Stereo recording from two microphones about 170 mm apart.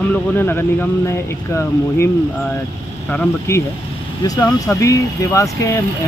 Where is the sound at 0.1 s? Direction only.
10° left (ahead or behind).